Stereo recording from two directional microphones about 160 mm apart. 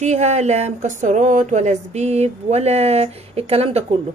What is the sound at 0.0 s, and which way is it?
Speech, 45° right (ahead or behind).